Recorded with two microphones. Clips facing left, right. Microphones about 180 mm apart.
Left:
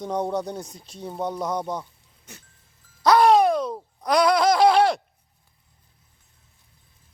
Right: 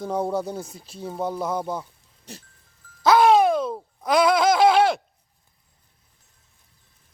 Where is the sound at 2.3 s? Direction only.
35° right (ahead or behind).